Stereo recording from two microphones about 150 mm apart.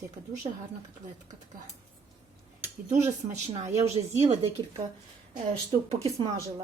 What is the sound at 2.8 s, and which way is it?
Speech, 50° right (ahead or behind).